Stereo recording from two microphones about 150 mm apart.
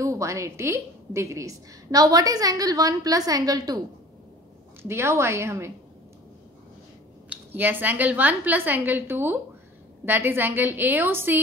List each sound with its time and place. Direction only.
0.0 s a woman's voice: 20° right (ahead or behind)
4.8 s a woman's voice: 20° right (ahead or behind)
7.2 s a woman's voice: 10° right (ahead or behind)